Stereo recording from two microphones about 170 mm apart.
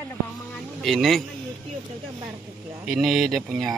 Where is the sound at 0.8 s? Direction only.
Centre (ahead or behind).